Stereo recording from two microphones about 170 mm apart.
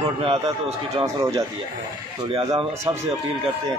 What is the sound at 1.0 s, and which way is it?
Speech, 20° right (ahead or behind).